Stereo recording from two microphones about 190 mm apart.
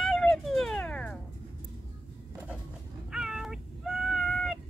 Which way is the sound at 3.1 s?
5° right (ahead or behind).